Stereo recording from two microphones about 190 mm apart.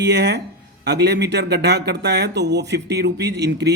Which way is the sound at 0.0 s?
65° right (ahead or behind).